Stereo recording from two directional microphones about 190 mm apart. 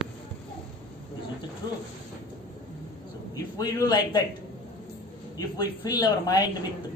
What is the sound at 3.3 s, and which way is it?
Speech, 20° left (ahead or behind).